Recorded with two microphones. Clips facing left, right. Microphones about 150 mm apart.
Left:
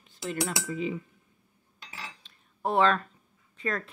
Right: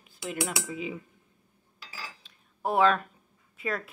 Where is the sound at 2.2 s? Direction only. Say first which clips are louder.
Left 1 dB; 5° right (ahead or behind).